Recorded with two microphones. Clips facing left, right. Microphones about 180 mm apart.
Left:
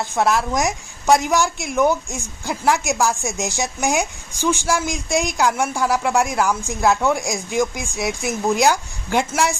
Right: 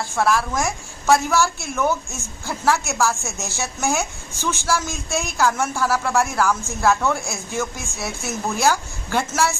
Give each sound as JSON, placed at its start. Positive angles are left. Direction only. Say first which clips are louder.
{"t": 0.1, "sound": "a woman's voice", "louder": "left 1 dB", "side_deg": 20}